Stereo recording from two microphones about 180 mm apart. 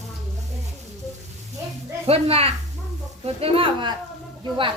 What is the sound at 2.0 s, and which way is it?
Speech, 35° right (ahead or behind).